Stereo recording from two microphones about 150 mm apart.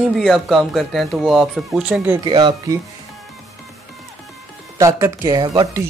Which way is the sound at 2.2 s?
35° right (ahead or behind).